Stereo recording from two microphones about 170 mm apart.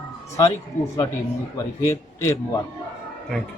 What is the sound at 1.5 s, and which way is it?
A man's voice, 15° left (ahead or behind).